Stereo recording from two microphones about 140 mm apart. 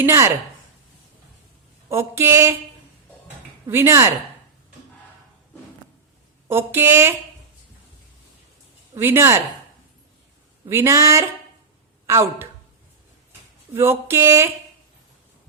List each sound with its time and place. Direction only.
0.0 s speech: 20° right (ahead or behind)
1.9 s speech: 20° right (ahead or behind)
3.7 s speech: 20° right (ahead or behind)
6.5 s speech: 15° right (ahead or behind)
9.0 s speech: 20° right (ahead or behind)
10.7 s speech: 20° right (ahead or behind)
13.7 s speech: 20° right (ahead or behind)